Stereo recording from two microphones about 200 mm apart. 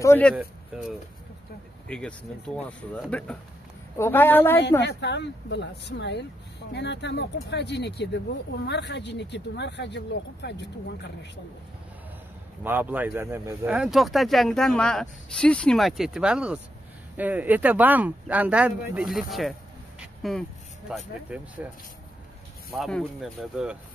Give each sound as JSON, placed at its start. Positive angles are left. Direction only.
{"t": 0.0, "sound": "a woman's voice", "side_deg": 10}
{"t": 4.8, "sound": "speech", "side_deg": 60}
{"t": 12.6, "sound": "speech", "side_deg": -10}
{"t": 20.0, "sound": "a sound", "side_deg": 0}
{"t": 20.9, "sound": "speech", "side_deg": -5}
{"t": 22.7, "sound": "speech", "side_deg": 0}